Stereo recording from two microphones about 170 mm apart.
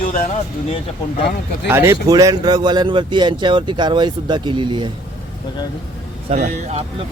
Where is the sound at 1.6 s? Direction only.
15° right (ahead or behind).